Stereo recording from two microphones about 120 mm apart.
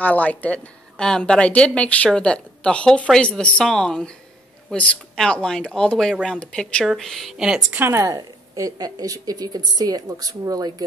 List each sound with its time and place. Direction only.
0.0 s a woman's voice: 15° left (ahead or behind); by 7.8 s 5° right (ahead or behind)
7.8 s a woman's voice: 25° right (ahead or behind)